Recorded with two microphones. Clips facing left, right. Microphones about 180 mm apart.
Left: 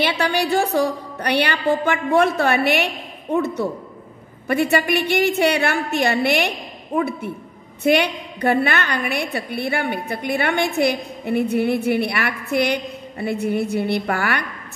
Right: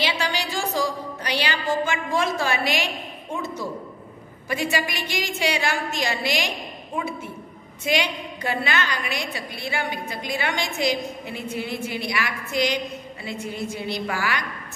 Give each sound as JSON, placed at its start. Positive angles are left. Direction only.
{"t": 0.0, "sound": "a woman's voice", "side_deg": 60}